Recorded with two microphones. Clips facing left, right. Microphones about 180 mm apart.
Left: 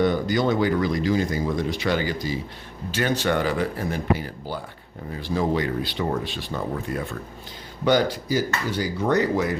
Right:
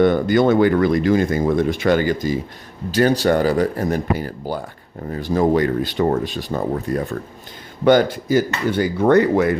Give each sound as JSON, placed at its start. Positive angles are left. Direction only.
{"t": 0.0, "sound": "speech", "side_deg": -55}
{"t": 2.9, "sound": "speech", "side_deg": -40}
{"t": 7.9, "sound": "speech", "side_deg": -55}